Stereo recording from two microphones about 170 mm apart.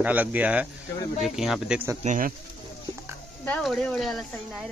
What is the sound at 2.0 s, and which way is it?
Speech, 50° right (ahead or behind).